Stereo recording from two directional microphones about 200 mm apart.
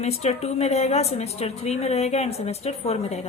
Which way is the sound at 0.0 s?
35° left (ahead or behind).